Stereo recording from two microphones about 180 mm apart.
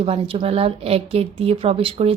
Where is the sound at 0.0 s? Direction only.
30° right (ahead or behind).